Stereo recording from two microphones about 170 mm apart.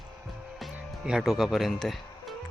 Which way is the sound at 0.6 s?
5° right (ahead or behind).